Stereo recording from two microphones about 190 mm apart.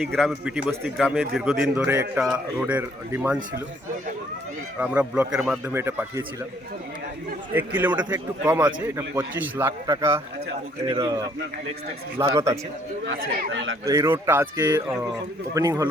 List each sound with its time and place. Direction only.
0.0 s a man's voice: centre (ahead or behind)
4.8 s a man's voice: 5° right (ahead or behind)
7.5 s a man's voice: 10° right (ahead or behind)
13.8 s a man's voice: 20° right (ahead or behind)